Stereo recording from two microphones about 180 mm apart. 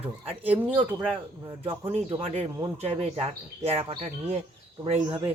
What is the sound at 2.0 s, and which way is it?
Speech, 30° right (ahead or behind).